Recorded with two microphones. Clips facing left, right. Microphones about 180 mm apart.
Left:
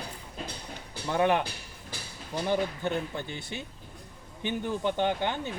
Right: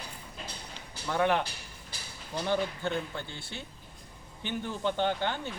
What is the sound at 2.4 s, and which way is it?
A man's voice, 15° left (ahead or behind).